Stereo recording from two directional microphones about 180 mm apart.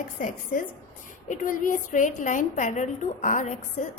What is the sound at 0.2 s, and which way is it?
A woman's voice, 45° left (ahead or behind).